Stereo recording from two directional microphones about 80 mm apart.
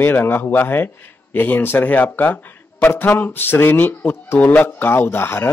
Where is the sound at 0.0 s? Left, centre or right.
Left.